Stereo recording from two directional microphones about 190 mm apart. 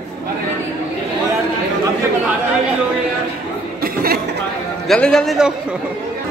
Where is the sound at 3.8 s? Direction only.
55° right (ahead or behind).